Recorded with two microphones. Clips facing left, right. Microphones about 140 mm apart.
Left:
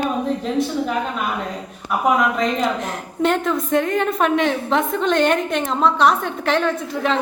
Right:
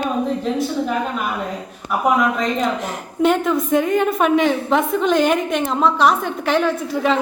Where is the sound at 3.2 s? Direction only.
5° right (ahead or behind).